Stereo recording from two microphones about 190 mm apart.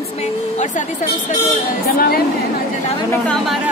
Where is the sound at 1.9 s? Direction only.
50° left (ahead or behind).